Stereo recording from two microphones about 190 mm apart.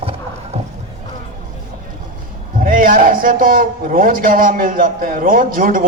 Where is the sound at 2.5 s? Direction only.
45° right (ahead or behind).